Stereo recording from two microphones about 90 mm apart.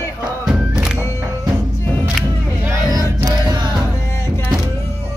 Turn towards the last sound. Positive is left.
turn(degrees=-50)  # may be behind; listen again after turning